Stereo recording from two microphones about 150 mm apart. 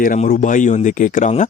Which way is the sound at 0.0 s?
65° left (ahead or behind).